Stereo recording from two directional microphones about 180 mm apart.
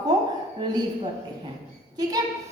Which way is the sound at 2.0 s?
20° right (ahead or behind).